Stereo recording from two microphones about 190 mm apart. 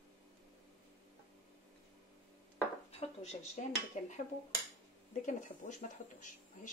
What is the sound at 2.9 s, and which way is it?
Speech, 35° left (ahead or behind).